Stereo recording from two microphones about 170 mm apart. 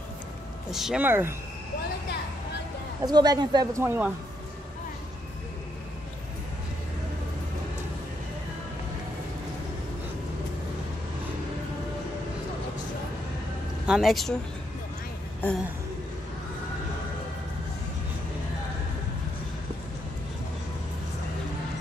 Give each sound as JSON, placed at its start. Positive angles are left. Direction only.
{"t": 0.7, "sound": "speech", "side_deg": 0}
{"t": 3.1, "sound": "a woman's voice", "side_deg": -25}
{"t": 3.8, "sound": "speech", "side_deg": -10}
{"t": 13.8, "sound": "speech", "side_deg": 0}
{"t": 15.4, "sound": "a sound", "side_deg": 10}